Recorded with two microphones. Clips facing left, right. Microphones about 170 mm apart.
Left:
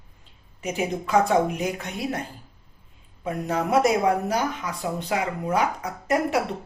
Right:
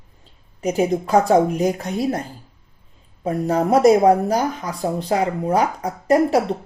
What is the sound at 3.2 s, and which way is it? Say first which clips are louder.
Speech: right 6 dB; 35° right (ahead or behind).